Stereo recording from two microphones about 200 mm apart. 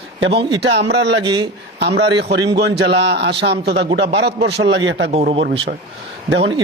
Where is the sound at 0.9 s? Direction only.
60° right (ahead or behind).